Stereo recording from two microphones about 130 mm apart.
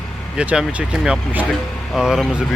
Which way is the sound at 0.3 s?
10° right (ahead or behind).